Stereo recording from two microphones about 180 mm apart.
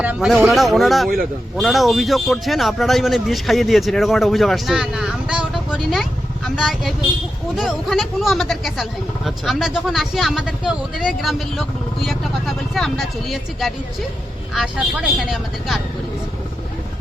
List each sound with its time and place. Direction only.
0.0 s speech: 5° right (ahead or behind)